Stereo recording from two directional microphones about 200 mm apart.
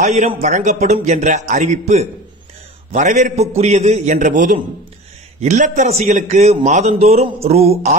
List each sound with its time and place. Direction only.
0.0 s a man's voice: 35° right (ahead or behind)